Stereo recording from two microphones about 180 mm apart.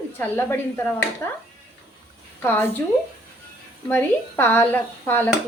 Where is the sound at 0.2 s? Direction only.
10° left (ahead or behind).